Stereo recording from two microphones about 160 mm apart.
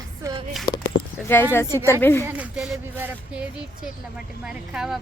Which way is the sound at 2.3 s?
5° right (ahead or behind).